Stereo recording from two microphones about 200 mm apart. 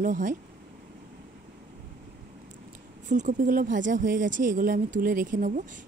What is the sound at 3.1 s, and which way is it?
Speech, 40° right (ahead or behind).